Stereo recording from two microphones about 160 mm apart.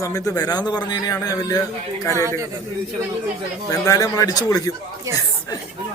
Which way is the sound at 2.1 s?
20° right (ahead or behind).